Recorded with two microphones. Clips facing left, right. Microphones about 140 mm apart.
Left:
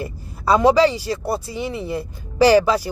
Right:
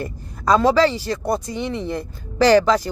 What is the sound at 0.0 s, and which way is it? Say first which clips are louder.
A woman's voice: even; 10° left (ahead or behind).